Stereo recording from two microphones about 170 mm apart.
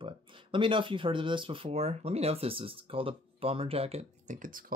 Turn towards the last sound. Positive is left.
turn(degrees=-55)  # may be behind; listen again after turning